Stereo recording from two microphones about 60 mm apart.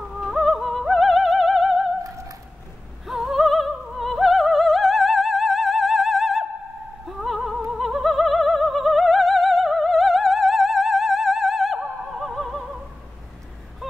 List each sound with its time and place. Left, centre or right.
0.1 s music: centre
2.0 s a sound: right
3.1 s opera: centre